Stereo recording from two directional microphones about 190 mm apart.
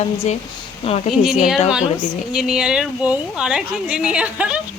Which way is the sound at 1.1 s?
Centre (ahead or behind).